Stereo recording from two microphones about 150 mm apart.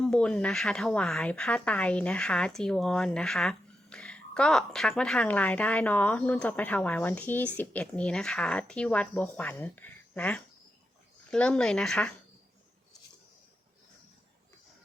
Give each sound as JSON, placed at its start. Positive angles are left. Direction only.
{"t": 0.0, "sound": "a woman's voice", "side_deg": 5}